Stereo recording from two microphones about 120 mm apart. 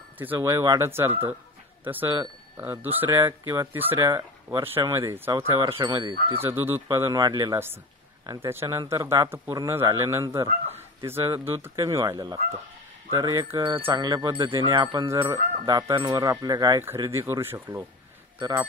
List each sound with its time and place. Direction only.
0.2 s speech: 20° right (ahead or behind)
4.0 s speech: 30° right (ahead or behind)
5.8 s speech: 35° right (ahead or behind)
6.4 s speech: 20° right (ahead or behind); by 7.5 s 35° right (ahead or behind)
7.5 s speech: 20° right (ahead or behind)
13.6 s music: 45° right (ahead or behind)
14.0 s speech: 30° right (ahead or behind)
15.0 s speech: 25° right (ahead or behind)
16.8 s speech: 20° right (ahead or behind)